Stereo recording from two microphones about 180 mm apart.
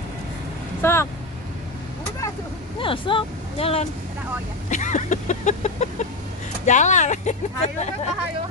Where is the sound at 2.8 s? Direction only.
30° left (ahead or behind).